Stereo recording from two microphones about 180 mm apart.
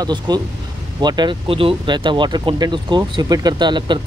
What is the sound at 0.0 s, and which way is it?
Speech, 25° right (ahead or behind).